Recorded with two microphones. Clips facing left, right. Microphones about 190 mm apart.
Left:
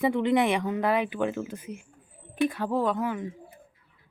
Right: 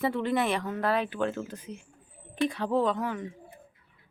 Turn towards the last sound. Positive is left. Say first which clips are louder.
# even
turn(degrees=5)  # may be behind; listen again after turning